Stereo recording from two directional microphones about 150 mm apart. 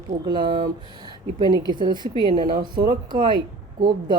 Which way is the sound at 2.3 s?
55° right (ahead or behind).